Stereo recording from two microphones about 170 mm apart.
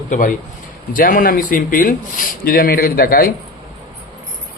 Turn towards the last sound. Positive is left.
turn(degrees=60)  # may be behind; listen again after turning